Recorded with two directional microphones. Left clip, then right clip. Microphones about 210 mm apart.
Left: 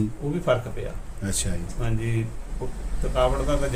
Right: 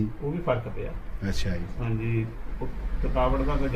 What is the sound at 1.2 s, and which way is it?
Speech, 15° left (ahead or behind).